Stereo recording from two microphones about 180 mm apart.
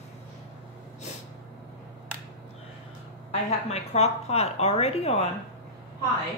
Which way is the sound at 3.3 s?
35° left (ahead or behind).